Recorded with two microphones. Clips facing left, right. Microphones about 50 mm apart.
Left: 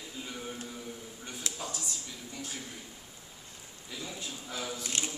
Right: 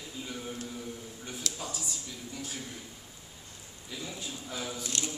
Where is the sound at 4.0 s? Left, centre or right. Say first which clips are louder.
Right 1 dB; centre.